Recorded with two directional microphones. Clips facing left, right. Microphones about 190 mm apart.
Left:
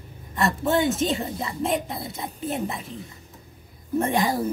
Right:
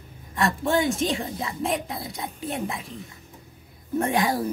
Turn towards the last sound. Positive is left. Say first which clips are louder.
# left 1 dB
turn(degrees=0)  # may be behind; listen again after turning